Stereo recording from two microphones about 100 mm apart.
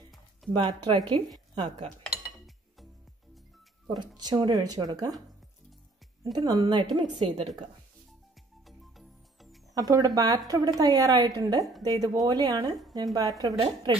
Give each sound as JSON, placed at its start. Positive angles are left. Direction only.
{"t": 0.5, "sound": "speech", "side_deg": -50}
{"t": 4.2, "sound": "a woman's voice", "side_deg": -45}
{"t": 6.3, "sound": "speech", "side_deg": -40}
{"t": 7.2, "sound": "a woman's voice", "side_deg": -90}
{"t": 8.6, "sound": "music", "side_deg": 0}
{"t": 9.8, "sound": "a woman's voice", "side_deg": -40}